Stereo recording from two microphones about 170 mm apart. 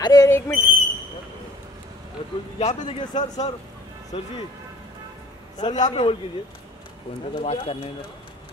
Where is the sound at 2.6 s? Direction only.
45° left (ahead or behind).